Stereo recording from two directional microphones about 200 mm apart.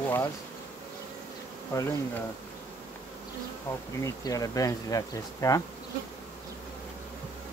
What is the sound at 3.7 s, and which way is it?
Speech, 10° left (ahead or behind).